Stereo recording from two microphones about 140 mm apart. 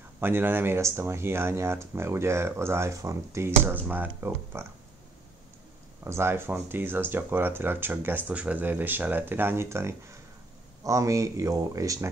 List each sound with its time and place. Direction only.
0.2 s speech: 15° right (ahead or behind)
6.0 s speech: 20° right (ahead or behind)